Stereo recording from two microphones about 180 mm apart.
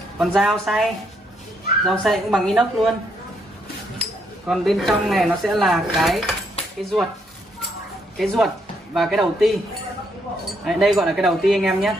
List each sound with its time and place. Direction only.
0.2 s speech: centre (ahead or behind)
1.9 s speech: centre (ahead or behind)
4.0 s speech: centre (ahead or behind)
8.2 s speech: centre (ahead or behind)
10.6 s speech: centre (ahead or behind)